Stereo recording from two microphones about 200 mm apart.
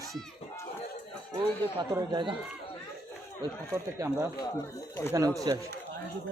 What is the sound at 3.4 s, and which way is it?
Speech, 15° right (ahead or behind).